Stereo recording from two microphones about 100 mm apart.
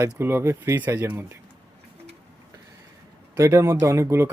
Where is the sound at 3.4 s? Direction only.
30° right (ahead or behind).